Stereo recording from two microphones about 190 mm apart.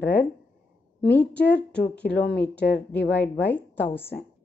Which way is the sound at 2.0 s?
60° left (ahead or behind).